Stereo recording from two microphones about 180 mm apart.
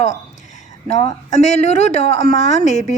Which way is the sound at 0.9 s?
40° left (ahead or behind).